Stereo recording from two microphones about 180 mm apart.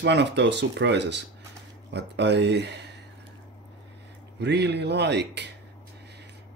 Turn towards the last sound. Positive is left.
turn(degrees=-70)  # may be behind; listen again after turning